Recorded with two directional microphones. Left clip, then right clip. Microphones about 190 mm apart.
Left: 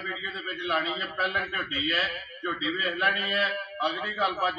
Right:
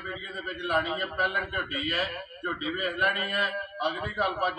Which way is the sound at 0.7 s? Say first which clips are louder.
Right 1 dB; 10° right (ahead or behind).